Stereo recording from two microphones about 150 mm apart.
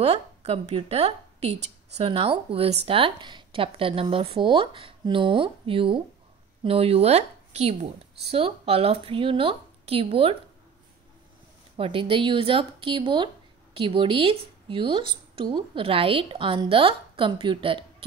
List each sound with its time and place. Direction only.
0.0 s a woman's voice: 45° right (ahead or behind)
11.7 s a woman's voice: 35° right (ahead or behind)